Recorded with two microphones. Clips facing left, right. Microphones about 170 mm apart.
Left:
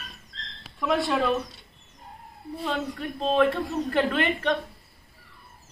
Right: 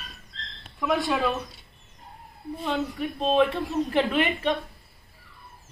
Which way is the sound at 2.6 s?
15° right (ahead or behind).